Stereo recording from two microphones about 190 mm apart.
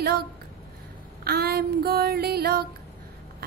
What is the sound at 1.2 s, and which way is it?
Music, 55° right (ahead or behind).